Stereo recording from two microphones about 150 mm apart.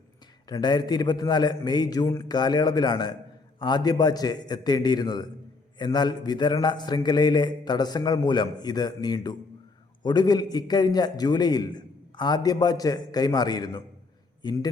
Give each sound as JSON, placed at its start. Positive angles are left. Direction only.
{"t": 0.4, "sound": "a man's voice", "side_deg": 25}